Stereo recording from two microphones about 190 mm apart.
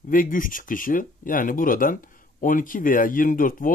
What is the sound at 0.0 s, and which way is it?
Speech, 45° left (ahead or behind).